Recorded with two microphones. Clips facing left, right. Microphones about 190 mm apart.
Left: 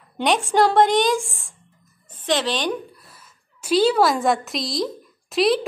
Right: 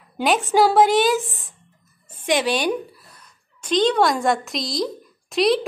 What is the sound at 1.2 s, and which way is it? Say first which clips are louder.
A woman's voice: right 2 dB; 20° right (ahead or behind).